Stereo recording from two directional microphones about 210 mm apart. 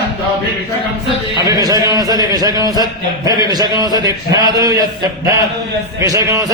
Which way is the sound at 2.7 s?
20° right (ahead or behind).